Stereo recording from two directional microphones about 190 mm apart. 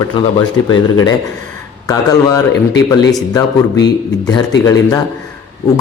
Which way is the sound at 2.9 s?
20° left (ahead or behind).